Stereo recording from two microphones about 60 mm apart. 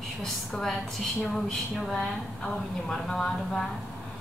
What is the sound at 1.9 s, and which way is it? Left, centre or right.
A woman's voice, centre.